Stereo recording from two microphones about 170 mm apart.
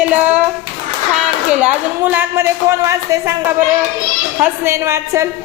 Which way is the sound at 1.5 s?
10° right (ahead or behind).